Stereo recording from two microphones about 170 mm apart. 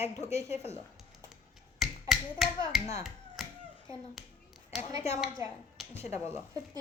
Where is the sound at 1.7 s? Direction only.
Centre (ahead or behind).